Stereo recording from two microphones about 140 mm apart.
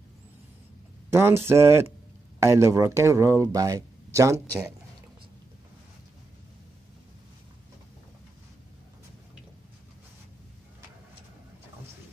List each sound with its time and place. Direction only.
1.1 s speech: 20° right (ahead or behind)